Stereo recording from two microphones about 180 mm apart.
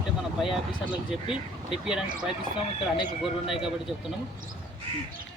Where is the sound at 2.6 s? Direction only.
30° left (ahead or behind).